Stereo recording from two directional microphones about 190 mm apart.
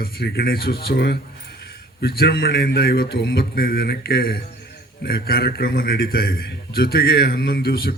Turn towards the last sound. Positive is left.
turn(degrees=55)  # may be behind; listen again after turning